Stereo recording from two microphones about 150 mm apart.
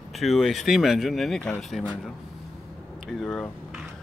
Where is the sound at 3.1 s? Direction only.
5° left (ahead or behind).